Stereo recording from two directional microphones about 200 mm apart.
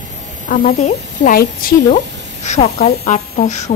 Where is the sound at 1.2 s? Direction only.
45° left (ahead or behind).